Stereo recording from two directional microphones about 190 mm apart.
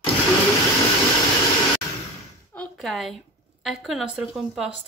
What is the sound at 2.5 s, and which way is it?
A woman's voice, 5° left (ahead or behind).